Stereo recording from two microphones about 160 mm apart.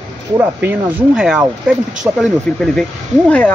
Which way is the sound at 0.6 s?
10° right (ahead or behind).